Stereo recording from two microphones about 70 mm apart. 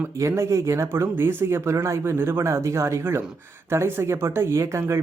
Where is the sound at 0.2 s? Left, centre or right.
Right.